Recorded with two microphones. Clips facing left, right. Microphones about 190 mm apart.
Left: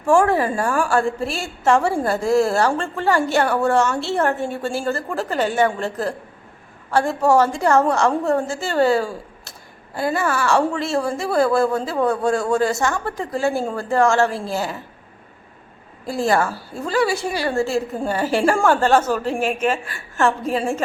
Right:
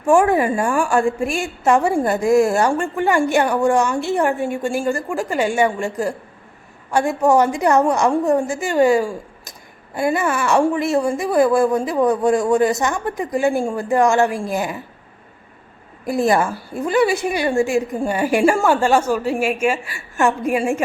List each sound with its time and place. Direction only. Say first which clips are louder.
0.0 s a woman's voice: right 2 dB; 15° right (ahead or behind)
16.0 s a woman's voice: right 2 dB; 20° right (ahead or behind)